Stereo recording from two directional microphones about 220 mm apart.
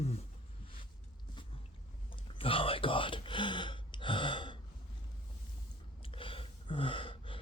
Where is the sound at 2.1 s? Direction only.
25° left (ahead or behind).